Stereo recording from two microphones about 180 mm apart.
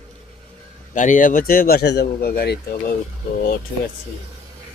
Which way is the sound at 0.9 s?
45° left (ahead or behind).